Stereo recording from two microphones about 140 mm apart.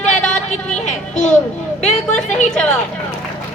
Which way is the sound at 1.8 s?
55° left (ahead or behind).